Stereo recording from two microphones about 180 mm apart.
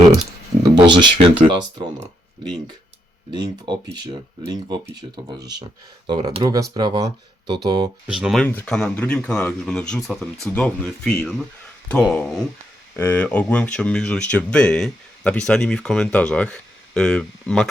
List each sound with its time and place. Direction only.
0.8 s speech: 25° right (ahead or behind)
3.3 s speech: 25° right (ahead or behind)
8.0 s speech: 5° right (ahead or behind)